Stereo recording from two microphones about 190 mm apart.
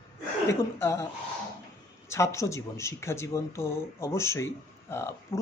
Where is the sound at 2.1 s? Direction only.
15° left (ahead or behind).